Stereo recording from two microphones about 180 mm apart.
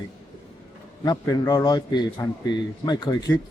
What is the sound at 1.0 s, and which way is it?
Speech, 20° left (ahead or behind).